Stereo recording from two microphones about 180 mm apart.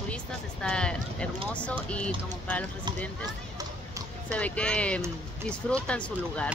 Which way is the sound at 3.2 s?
20° right (ahead or behind).